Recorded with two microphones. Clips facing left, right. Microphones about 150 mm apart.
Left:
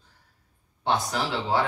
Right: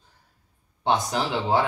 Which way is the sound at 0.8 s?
20° right (ahead or behind).